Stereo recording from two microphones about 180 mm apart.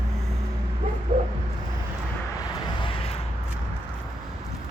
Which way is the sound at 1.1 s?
30° right (ahead or behind).